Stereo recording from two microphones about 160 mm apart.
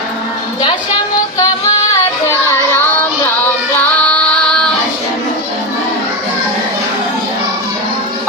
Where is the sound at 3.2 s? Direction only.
10° left (ahead or behind).